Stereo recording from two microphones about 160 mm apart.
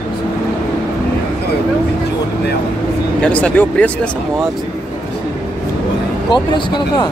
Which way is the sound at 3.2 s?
10° left (ahead or behind).